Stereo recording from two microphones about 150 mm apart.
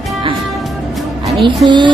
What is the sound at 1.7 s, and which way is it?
Speech, 30° right (ahead or behind).